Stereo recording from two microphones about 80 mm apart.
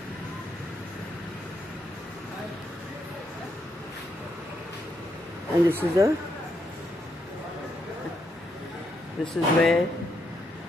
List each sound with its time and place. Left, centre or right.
5.7 s speech: right
9.2 s speech: centre